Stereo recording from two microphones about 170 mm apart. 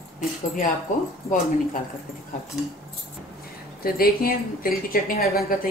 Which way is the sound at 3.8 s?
60° left (ahead or behind).